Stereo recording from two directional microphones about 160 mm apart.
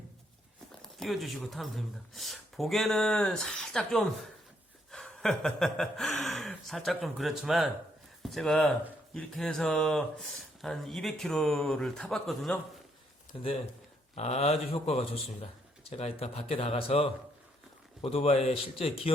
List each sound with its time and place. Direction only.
0.9 s speech: centre (ahead or behind)
14.2 s speech: 40° left (ahead or behind)